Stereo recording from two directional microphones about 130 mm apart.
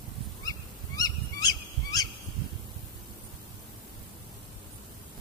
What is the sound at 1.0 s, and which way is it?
Fowl, 30° left (ahead or behind).